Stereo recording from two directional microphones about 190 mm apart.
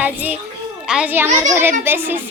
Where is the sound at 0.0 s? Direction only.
10° right (ahead or behind).